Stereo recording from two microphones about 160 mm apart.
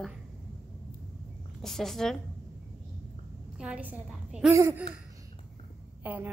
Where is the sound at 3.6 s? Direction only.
10° right (ahead or behind).